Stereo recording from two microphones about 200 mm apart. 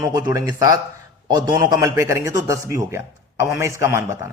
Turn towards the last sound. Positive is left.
turn(degrees=-15)  # may be behind; listen again after turning